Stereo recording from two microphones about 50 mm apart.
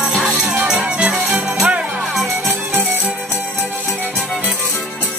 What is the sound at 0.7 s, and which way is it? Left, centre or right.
Music, right.